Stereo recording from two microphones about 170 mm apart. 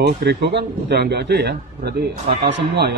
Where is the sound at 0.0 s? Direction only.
75° right (ahead or behind).